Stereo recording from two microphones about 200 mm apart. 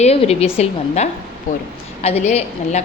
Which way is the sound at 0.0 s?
30° left (ahead or behind).